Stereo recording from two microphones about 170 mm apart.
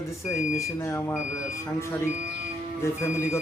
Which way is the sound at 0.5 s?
15° left (ahead or behind).